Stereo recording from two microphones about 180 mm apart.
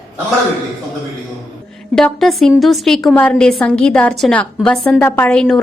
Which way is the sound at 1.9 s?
Centre (ahead or behind).